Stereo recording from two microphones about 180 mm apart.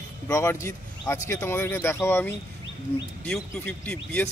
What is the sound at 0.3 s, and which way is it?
Speech, 15° left (ahead or behind).